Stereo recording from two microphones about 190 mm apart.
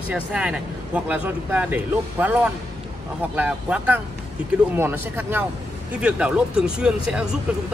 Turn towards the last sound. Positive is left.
turn(degrees=-5)  # may be behind; listen again after turning